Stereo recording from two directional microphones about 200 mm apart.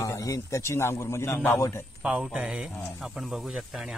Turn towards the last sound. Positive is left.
turn(degrees=0)  # may be behind; listen again after turning